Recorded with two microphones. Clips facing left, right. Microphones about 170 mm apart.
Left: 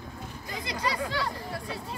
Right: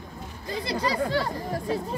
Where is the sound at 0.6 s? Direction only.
35° right (ahead or behind).